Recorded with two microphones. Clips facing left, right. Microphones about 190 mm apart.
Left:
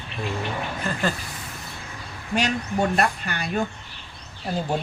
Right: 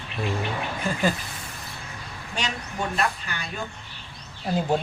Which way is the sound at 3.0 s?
60° left (ahead or behind).